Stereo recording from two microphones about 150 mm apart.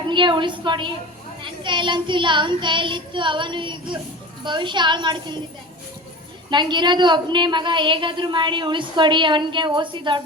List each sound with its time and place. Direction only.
0.1 s a woman's voice: 30° right (ahead or behind)
6.5 s a woman's voice: 30° right (ahead or behind)